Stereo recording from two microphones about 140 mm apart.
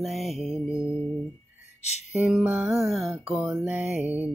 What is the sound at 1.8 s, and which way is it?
Music, 55° left (ahead or behind).